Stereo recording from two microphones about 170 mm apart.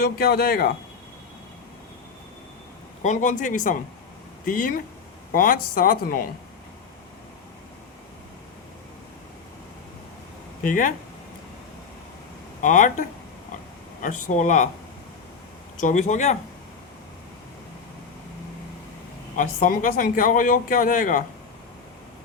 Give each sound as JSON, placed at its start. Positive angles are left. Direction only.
{"t": 0.0, "sound": "speech", "side_deg": 65}
{"t": 3.0, "sound": "speech", "side_deg": 45}
{"t": 10.6, "sound": "speech", "side_deg": 55}
{"t": 12.6, "sound": "speech", "side_deg": 50}
{"t": 15.8, "sound": "speech", "side_deg": 45}
{"t": 19.4, "sound": "speech", "side_deg": 55}